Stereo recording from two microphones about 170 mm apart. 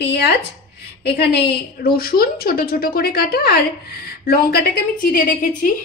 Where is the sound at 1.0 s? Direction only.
70° left (ahead or behind).